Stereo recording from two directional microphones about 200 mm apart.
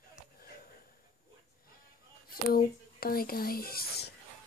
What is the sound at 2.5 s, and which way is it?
Speech, 50° left (ahead or behind).